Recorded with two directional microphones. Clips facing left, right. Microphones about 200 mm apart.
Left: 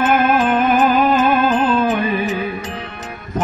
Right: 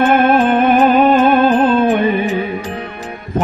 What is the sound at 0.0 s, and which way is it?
Music, 30° right (ahead or behind).